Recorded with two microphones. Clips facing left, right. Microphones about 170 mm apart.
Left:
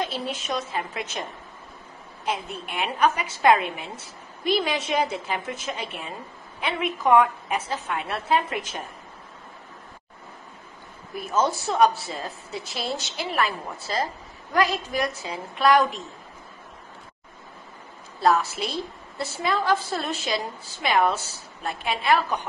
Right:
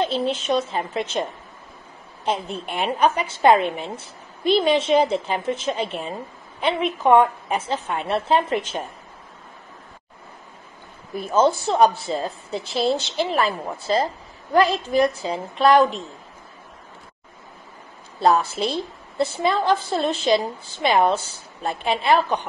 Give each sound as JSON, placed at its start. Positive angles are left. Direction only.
{"t": 0.0, "sound": "a woman's voice", "side_deg": -30}
{"t": 2.2, "sound": "a woman's voice", "side_deg": -30}
{"t": 11.1, "sound": "a woman's voice", "side_deg": -30}
{"t": 18.5, "sound": "a woman's voice", "side_deg": -30}